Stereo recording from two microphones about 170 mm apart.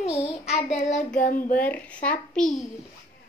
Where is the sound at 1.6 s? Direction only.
10° left (ahead or behind).